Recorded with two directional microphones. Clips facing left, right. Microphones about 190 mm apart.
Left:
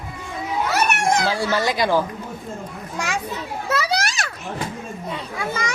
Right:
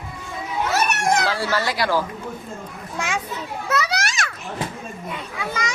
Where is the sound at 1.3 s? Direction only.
15° left (ahead or behind).